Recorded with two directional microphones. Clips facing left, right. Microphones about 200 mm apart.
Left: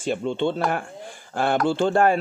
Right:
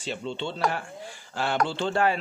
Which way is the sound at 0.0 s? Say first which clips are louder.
Left 8 dB; 50° left (ahead or behind).